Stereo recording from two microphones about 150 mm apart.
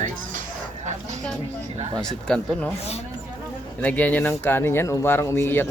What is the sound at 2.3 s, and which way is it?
Speech, 5° left (ahead or behind).